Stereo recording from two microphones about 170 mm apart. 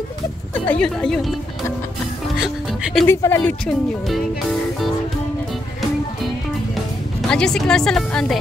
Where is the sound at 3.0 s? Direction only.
15° left (ahead or behind).